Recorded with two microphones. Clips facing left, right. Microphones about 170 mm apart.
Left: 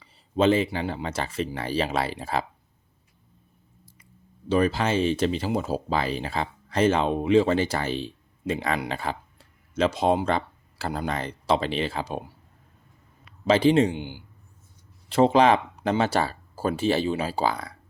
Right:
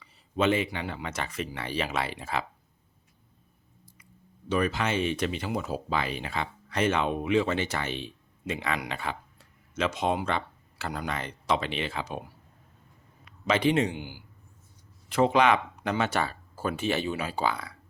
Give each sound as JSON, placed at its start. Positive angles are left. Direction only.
{"t": 0.0, "sound": "speech", "side_deg": 30}
{"t": 4.4, "sound": "speech", "side_deg": 30}
{"t": 13.4, "sound": "a man's voice", "side_deg": 30}